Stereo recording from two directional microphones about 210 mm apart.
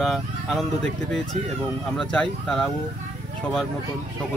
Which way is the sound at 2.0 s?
5° left (ahead or behind).